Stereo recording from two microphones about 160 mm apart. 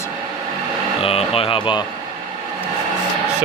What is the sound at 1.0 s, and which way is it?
Speech, 35° left (ahead or behind).